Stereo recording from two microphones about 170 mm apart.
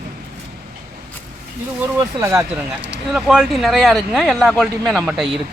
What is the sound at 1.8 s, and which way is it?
Speech, 15° right (ahead or behind).